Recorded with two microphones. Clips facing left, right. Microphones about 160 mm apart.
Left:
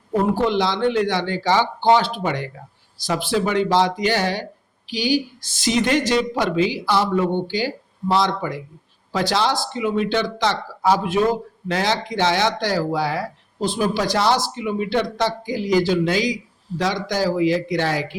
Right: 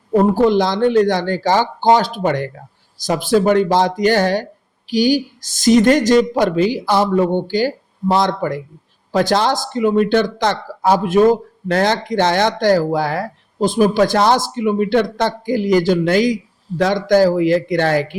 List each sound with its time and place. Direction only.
0.3 s speech: 45° right (ahead or behind)